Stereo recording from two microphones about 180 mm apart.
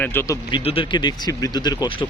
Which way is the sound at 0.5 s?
30° left (ahead or behind).